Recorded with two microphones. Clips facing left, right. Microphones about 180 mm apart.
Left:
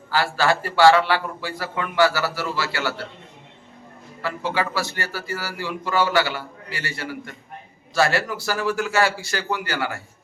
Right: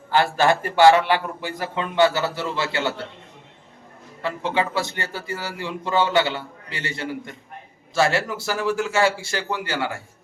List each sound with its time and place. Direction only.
0.1 s speech: 20° right (ahead or behind)
4.2 s speech: 20° right (ahead or behind)